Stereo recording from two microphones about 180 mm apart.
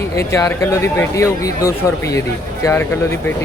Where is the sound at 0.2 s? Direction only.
15° left (ahead or behind).